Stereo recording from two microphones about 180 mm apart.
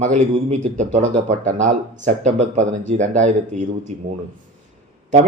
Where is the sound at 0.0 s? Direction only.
45° right (ahead or behind).